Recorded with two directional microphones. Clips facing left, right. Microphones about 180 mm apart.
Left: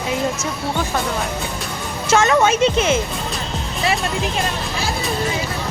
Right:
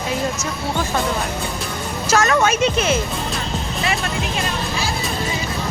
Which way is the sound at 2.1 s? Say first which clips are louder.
Left 2 dB; 25° left (ahead or behind).